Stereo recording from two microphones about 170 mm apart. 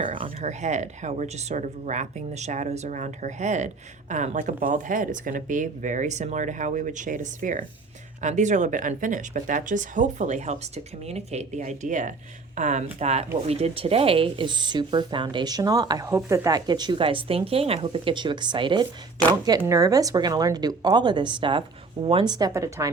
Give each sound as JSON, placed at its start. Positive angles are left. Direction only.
{"t": 0.0, "sound": "speech", "side_deg": -30}
{"t": 0.4, "sound": "speech", "side_deg": -45}